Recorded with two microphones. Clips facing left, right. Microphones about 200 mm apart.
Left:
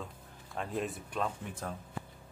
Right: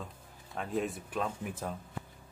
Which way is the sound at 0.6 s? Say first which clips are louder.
Right 2 dB; centre (ahead or behind).